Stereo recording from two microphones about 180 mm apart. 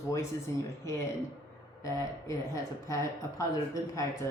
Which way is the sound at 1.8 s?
15° left (ahead or behind).